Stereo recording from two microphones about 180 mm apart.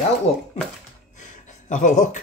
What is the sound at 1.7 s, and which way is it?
Speech, 45° left (ahead or behind).